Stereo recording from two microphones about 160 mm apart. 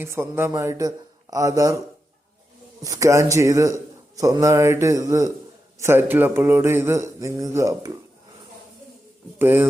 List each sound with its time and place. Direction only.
0.0 s a man's voice: 15° right (ahead or behind)
2.8 s a man's voice: 20° right (ahead or behind)
9.4 s speech: 15° right (ahead or behind)